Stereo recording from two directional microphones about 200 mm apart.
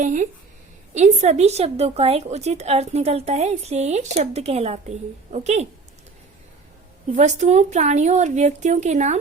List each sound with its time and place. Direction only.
0.0 s a woman's voice: 40° right (ahead or behind)
7.1 s a woman's voice: 35° right (ahead or behind)